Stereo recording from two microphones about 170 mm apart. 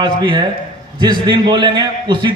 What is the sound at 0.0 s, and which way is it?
A man's voice, 25° right (ahead or behind).